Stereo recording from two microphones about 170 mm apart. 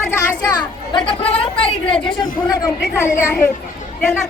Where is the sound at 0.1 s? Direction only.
15° left (ahead or behind).